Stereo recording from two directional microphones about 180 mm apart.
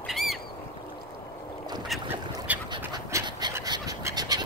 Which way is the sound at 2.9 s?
25° right (ahead or behind).